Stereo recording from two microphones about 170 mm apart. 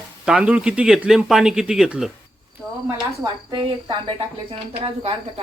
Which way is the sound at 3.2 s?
25° right (ahead or behind).